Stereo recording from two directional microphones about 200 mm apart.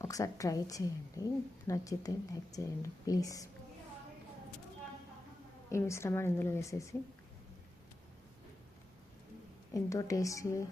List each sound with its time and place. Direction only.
0.0 s a woman's voice: 15° left (ahead or behind)
5.6 s a woman's voice: 15° left (ahead or behind)
9.7 s a woman's voice: 15° left (ahead or behind)